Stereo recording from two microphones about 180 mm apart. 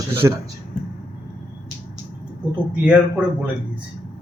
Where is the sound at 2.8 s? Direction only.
10° right (ahead or behind).